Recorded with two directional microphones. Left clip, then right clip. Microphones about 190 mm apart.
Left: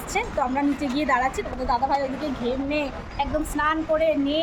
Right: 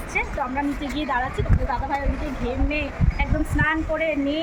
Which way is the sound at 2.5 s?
20° left (ahead or behind).